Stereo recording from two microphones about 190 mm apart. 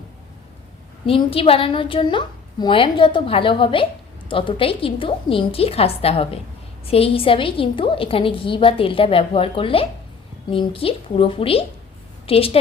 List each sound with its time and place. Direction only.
1.0 s a woman's voice: 30° left (ahead or behind)